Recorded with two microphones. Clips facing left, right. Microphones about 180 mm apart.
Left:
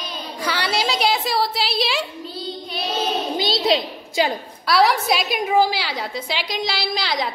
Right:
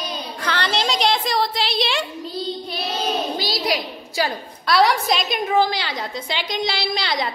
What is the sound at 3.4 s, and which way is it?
Speech, 25° left (ahead or behind).